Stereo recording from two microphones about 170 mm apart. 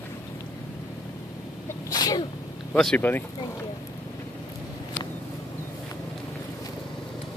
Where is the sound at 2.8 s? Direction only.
5° left (ahead or behind).